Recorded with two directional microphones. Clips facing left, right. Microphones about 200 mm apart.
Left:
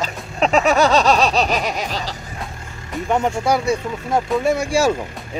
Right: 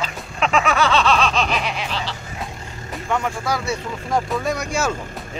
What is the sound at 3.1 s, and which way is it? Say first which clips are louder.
Speech: left 5 dB; 25° left (ahead or behind).